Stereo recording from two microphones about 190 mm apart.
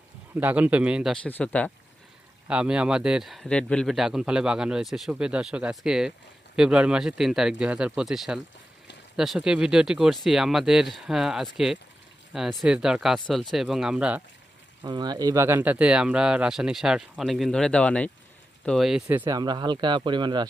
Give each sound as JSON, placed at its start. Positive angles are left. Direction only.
{"t": 0.3, "sound": "speech", "side_deg": -10}
{"t": 2.5, "sound": "speech", "side_deg": -5}
{"t": 14.8, "sound": "speech", "side_deg": -20}
{"t": 19.2, "sound": "speech", "side_deg": -20}